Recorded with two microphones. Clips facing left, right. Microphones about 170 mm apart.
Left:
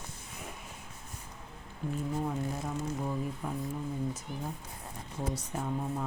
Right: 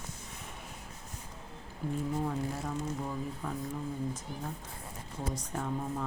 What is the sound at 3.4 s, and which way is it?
Speech, 10° left (ahead or behind).